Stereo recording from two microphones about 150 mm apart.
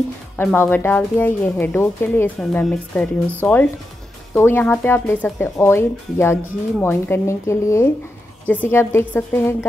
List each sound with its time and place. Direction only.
0.4 s speech: 15° left (ahead or behind)